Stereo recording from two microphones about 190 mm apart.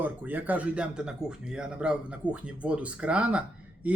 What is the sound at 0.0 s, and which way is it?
A man's voice, 10° right (ahead or behind).